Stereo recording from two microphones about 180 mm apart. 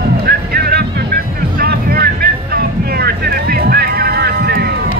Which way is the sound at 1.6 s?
60° right (ahead or behind).